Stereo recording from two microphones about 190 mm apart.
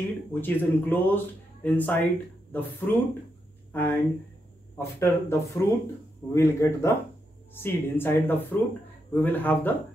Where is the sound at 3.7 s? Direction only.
10° left (ahead or behind).